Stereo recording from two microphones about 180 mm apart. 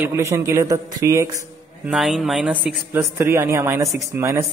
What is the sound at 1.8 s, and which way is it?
A man's voice, centre (ahead or behind).